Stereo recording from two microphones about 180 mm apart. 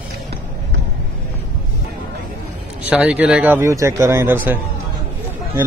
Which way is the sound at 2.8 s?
5° right (ahead or behind).